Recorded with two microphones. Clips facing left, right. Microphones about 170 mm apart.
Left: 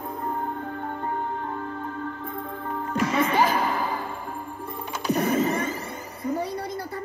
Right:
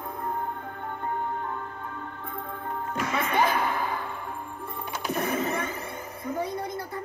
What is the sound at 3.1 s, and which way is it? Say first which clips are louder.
Music: left 2 dB; 55° right (ahead or behind).